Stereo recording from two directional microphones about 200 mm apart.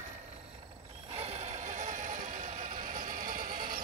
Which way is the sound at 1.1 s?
30° right (ahead or behind).